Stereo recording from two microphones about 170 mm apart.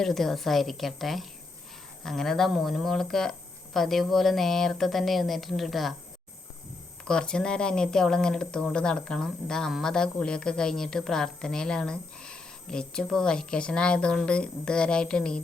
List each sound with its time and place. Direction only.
0.0 s speech: centre (ahead or behind)
7.0 s speech: 5° left (ahead or behind)